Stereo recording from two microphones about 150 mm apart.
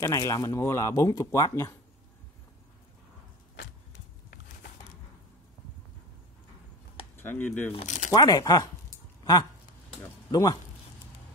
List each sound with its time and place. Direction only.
0.0 s speech: 25° left (ahead or behind)
7.2 s speech: 10° left (ahead or behind)
7.7 s speech: 50° left (ahead or behind)
8.1 s speech: 25° left (ahead or behind)